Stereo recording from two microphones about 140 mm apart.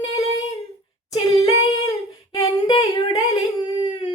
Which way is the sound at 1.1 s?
25° left (ahead or behind).